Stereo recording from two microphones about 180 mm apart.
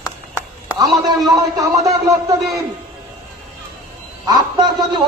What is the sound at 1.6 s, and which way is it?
Speech, 20° right (ahead or behind).